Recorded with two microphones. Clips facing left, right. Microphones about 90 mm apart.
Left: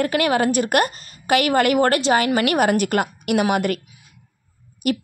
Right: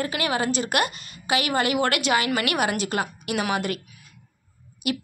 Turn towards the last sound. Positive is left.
turn(degrees=45)  # may be behind; listen again after turning